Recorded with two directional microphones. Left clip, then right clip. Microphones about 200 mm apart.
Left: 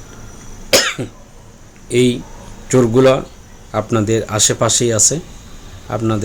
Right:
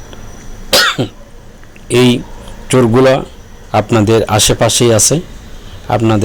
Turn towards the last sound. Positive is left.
turn(degrees=-15)  # may be behind; listen again after turning